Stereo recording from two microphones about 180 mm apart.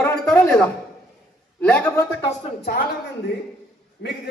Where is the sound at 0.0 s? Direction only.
5° left (ahead or behind).